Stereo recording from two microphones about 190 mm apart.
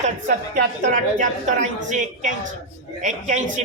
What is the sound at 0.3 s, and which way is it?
A woman's voice, 45° right (ahead or behind).